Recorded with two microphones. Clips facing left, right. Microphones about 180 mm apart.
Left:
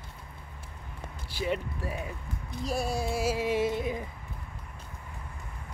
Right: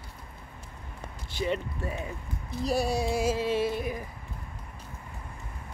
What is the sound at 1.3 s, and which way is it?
Speech, 5° left (ahead or behind).